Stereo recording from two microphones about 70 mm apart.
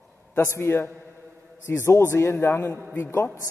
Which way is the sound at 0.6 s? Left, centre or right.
Left.